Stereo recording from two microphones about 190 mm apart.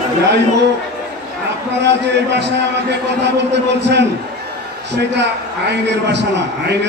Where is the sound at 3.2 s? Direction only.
65° right (ahead or behind).